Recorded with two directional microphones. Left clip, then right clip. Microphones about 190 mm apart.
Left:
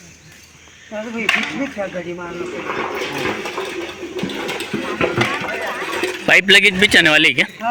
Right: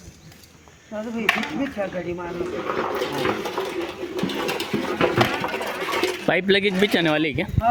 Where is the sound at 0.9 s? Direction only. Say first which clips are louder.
Left 4 dB; 35° left (ahead or behind).